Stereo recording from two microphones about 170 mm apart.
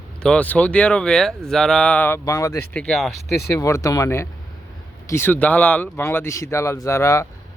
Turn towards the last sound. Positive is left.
turn(degrees=15)  # may be behind; listen again after turning